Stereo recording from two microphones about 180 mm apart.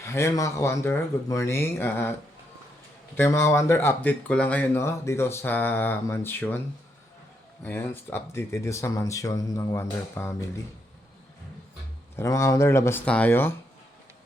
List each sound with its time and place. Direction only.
0.0 s speech: 15° left (ahead or behind)
3.2 s speech: 15° left (ahead or behind)
7.6 s speech: 10° left (ahead or behind)
12.1 s speech: 15° left (ahead or behind)